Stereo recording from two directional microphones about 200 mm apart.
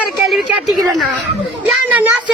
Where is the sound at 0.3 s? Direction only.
Centre (ahead or behind).